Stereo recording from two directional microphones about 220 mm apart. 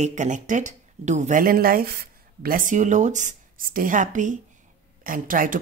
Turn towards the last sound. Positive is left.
turn(degrees=-40)  # may be behind; listen again after turning